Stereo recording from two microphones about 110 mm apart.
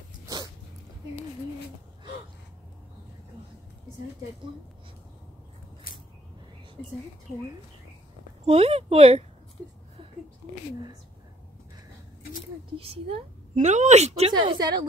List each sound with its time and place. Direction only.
8.5 s speech: 60° right (ahead or behind)
12.7 s a woman's voice: 60° right (ahead or behind); by 14.2 s 85° right
14.2 s a woman's voice: 50° right (ahead or behind)